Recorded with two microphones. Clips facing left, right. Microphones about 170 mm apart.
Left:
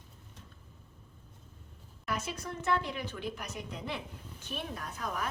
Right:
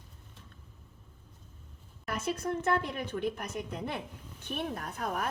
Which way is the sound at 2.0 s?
55° right (ahead or behind).